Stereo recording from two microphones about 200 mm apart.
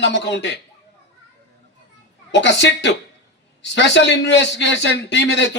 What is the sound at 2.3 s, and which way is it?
Speech, 65° left (ahead or behind).